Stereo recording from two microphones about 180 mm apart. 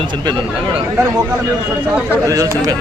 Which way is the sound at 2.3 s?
20° right (ahead or behind).